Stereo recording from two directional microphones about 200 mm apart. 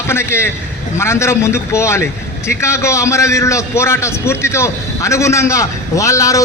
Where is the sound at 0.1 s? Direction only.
15° left (ahead or behind).